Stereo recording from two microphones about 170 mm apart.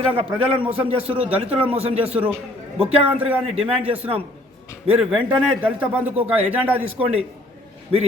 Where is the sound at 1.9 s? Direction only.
10° right (ahead or behind).